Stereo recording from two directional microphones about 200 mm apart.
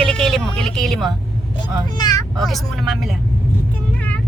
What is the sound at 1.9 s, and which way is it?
Speech, 20° left (ahead or behind).